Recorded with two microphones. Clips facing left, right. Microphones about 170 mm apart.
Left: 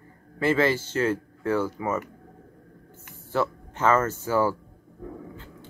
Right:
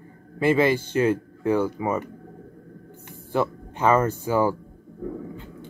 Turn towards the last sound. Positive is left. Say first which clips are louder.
# right 5 dB
turn(degrees=-15)  # may be behind; listen again after turning